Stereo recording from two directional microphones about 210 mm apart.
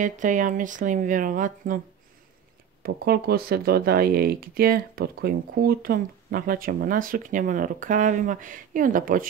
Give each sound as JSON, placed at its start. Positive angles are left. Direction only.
{"t": 0.0, "sound": "speech", "side_deg": -40}
{"t": 2.8, "sound": "speech", "side_deg": -45}